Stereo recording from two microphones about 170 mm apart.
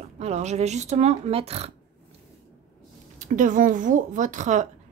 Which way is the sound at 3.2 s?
50° right (ahead or behind).